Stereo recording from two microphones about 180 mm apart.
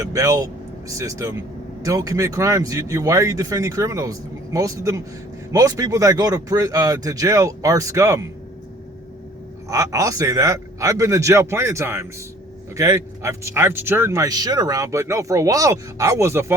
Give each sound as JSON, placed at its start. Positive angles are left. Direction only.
{"t": 0.0, "sound": "speech", "side_deg": -20}
{"t": 9.6, "sound": "speech", "side_deg": -20}